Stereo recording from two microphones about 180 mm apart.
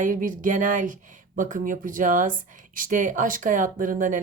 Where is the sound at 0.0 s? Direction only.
50° right (ahead or behind).